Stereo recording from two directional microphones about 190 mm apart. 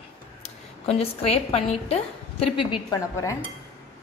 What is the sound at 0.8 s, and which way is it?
A woman's voice, 30° left (ahead or behind).